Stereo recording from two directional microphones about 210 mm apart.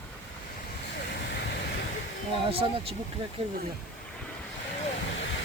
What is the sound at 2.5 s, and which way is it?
Speech, 25° right (ahead or behind).